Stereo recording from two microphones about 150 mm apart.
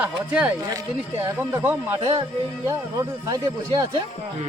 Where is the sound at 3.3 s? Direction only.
25° right (ahead or behind).